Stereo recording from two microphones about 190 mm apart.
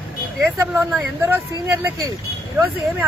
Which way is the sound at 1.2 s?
10° right (ahead or behind).